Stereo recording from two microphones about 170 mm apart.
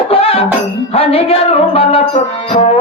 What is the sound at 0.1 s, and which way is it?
Music, 35° left (ahead or behind).